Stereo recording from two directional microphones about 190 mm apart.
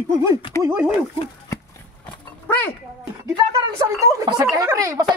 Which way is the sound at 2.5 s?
10° left (ahead or behind).